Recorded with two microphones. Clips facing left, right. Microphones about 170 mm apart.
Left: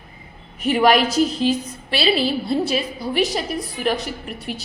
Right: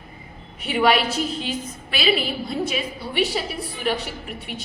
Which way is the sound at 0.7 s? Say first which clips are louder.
Left 3 dB; 45° left (ahead or behind).